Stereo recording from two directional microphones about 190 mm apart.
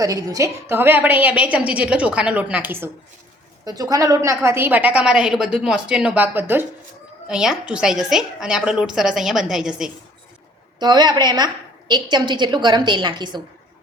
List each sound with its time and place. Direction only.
0.0 s a woman's voice: 15° right (ahead or behind)
10.8 s a woman's voice: 20° right (ahead or behind)